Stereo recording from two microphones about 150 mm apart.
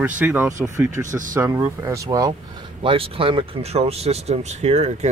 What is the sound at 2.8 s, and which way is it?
Speech, 35° right (ahead or behind).